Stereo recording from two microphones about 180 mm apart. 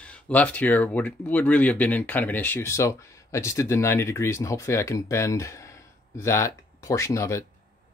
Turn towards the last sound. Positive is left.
turn(degrees=15)  # may be behind; listen again after turning